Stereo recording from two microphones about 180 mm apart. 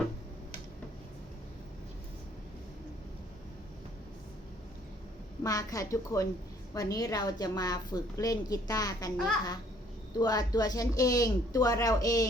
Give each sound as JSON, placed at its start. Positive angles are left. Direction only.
{"t": 5.4, "sound": "a woman's voice", "side_deg": 20}
{"t": 10.2, "sound": "a woman's voice", "side_deg": 20}